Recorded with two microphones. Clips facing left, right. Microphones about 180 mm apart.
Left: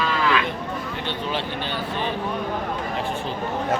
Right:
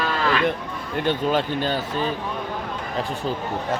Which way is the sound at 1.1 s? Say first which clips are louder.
Right 7 dB; 45° right (ahead or behind).